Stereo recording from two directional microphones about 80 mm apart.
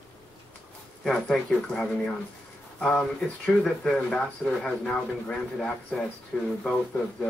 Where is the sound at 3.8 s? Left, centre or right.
Centre.